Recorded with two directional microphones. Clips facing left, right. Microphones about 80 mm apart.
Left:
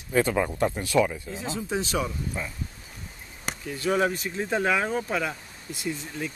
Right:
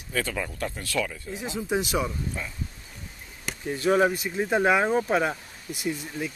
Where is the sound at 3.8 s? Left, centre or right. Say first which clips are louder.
Right 3 dB; centre.